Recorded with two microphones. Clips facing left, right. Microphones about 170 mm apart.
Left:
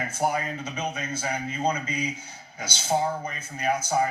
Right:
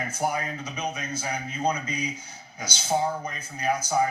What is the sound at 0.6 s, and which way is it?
Speech, 30° left (ahead or behind).